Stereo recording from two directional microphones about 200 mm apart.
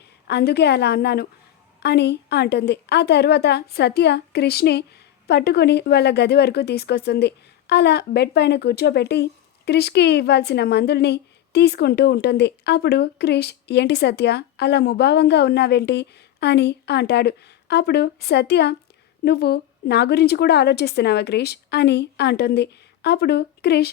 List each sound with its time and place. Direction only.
0.3 s speech: 55° left (ahead or behind)